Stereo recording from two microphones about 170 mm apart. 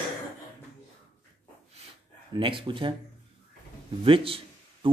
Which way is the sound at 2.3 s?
30° right (ahead or behind).